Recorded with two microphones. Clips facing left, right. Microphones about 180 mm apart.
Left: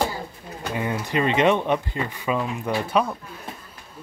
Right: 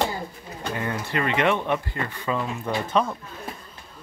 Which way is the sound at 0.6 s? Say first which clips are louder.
Left 2 dB; 15° left (ahead or behind).